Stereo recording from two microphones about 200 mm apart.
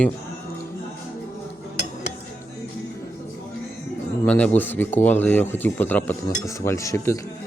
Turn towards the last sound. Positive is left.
turn(degrees=15)  # may be behind; listen again after turning